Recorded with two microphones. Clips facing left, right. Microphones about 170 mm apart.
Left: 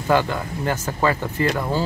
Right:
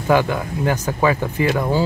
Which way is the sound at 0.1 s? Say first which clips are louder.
Right 3 dB; 15° right (ahead or behind).